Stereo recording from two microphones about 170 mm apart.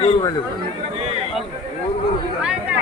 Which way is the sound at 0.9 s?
40° right (ahead or behind).